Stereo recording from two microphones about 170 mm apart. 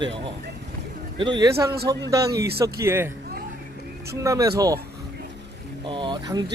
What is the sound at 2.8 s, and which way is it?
Speech, 15° right (ahead or behind).